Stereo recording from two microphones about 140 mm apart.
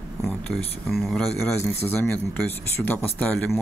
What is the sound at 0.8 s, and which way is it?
Speech, centre (ahead or behind).